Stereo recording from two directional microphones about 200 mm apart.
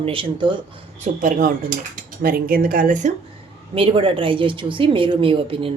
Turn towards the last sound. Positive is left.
turn(degrees=-25)  # may be behind; listen again after turning